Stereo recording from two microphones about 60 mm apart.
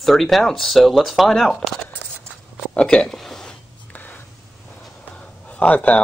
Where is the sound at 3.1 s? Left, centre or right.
Centre.